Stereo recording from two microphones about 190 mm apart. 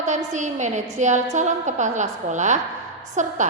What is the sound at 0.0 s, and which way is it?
A woman's voice, 40° right (ahead or behind).